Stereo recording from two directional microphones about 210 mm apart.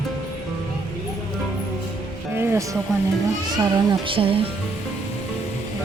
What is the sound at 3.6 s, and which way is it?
Speech, 25° right (ahead or behind).